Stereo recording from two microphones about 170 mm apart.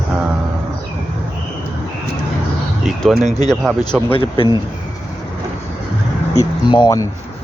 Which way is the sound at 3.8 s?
25° left (ahead or behind).